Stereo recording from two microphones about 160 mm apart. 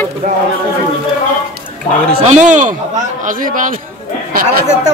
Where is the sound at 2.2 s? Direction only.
50° right (ahead or behind).